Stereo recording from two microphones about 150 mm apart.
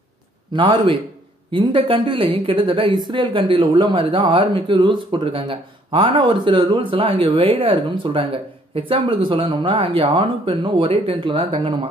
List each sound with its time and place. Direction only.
0.5 s speech: 35° right (ahead or behind)